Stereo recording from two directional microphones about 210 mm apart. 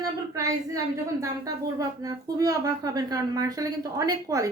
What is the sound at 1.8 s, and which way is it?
A woman's voice, 15° right (ahead or behind).